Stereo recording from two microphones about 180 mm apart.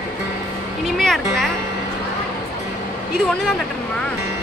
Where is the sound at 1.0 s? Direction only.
Centre (ahead or behind).